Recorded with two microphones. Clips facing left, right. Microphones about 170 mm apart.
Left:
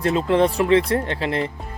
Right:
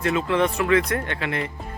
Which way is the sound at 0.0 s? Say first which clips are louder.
Left 4 dB; 35° left (ahead or behind).